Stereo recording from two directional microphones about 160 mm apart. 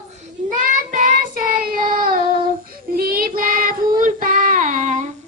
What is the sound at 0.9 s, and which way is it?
Child singing, 55° right (ahead or behind).